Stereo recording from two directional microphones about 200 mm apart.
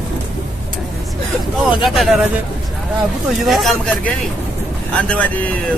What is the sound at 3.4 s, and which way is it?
Speech, centre (ahead or behind).